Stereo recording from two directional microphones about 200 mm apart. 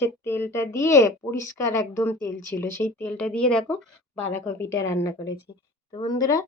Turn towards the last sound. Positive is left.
turn(degrees=20)  # may be behind; listen again after turning